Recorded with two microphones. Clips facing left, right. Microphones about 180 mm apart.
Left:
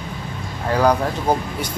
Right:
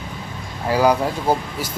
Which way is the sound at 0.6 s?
10° right (ahead or behind).